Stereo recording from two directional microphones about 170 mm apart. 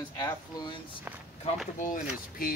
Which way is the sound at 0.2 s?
25° left (ahead or behind).